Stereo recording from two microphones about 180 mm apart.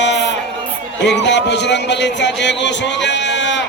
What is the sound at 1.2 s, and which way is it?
A man's voice, 75° left (ahead or behind).